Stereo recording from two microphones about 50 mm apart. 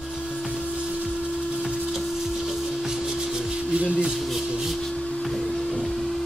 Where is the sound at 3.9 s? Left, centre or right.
Centre.